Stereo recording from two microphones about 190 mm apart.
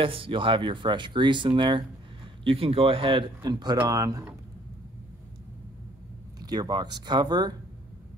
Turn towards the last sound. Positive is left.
turn(degrees=-20)  # may be behind; listen again after turning